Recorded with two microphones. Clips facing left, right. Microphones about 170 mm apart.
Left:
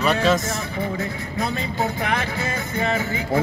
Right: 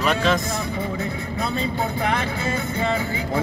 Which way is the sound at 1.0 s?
30° right (ahead or behind).